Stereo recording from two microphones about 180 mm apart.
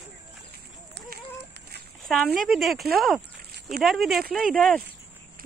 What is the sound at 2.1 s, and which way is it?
Speech, centre (ahead or behind).